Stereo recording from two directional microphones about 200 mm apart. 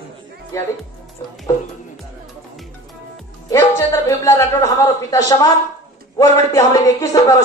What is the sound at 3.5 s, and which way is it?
A woman's voice, 15° left (ahead or behind).